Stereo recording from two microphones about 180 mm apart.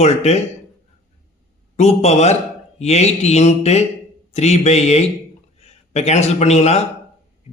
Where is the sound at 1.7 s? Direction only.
40° left (ahead or behind).